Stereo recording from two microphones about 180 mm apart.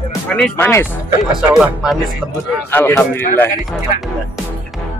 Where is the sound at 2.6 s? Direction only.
10° left (ahead or behind).